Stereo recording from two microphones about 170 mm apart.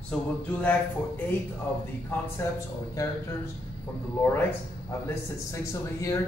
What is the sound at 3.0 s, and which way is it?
Speech, 20° left (ahead or behind).